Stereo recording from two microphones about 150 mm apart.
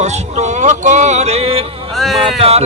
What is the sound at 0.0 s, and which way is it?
A man's voice, 50° right (ahead or behind).